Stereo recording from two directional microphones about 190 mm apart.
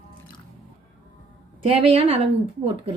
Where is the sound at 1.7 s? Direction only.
30° right (ahead or behind).